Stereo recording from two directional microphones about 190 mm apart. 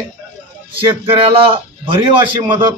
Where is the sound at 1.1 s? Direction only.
25° right (ahead or behind).